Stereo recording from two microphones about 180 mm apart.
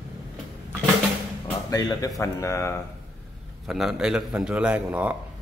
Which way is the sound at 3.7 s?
Centre (ahead or behind).